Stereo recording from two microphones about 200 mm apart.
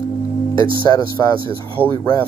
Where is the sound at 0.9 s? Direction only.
15° left (ahead or behind).